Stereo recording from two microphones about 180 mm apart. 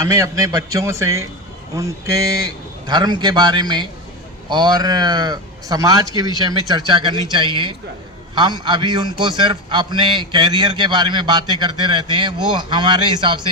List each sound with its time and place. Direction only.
0.1 s a man's voice: 15° right (ahead or behind)